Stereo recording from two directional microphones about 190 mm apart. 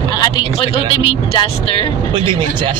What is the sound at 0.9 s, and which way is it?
Speech, 30° left (ahead or behind).